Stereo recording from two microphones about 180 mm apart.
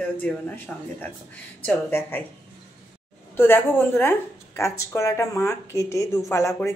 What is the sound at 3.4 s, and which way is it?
A woman's voice, 10° left (ahead or behind).